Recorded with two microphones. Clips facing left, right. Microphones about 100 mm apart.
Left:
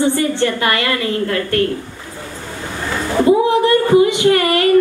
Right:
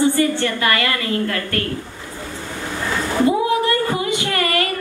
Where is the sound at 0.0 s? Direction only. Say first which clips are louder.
Left 1 dB; 25° left (ahead or behind).